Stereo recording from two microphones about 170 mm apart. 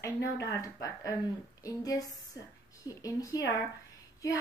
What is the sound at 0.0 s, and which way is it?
A woman's voice, 20° left (ahead or behind).